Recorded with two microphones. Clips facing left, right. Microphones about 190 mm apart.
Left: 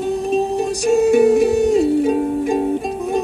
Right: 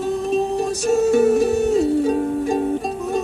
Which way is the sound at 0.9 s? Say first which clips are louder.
Left 3 dB; 15° left (ahead or behind).